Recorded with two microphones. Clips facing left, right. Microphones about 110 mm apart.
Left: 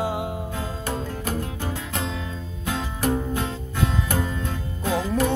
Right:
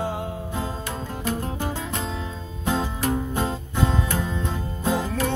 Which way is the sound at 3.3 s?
30° right (ahead or behind).